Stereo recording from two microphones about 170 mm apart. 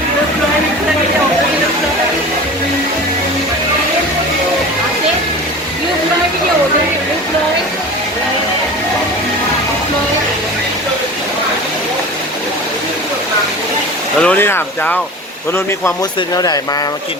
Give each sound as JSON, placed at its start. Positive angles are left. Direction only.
{"t": 14.2, "sound": "speech", "side_deg": 10}
{"t": 16.3, "sound": "speech", "side_deg": 20}